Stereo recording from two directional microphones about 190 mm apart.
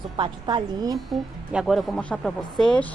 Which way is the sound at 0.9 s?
Centre (ahead or behind).